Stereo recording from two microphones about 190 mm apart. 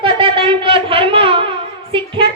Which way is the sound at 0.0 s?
25° right (ahead or behind).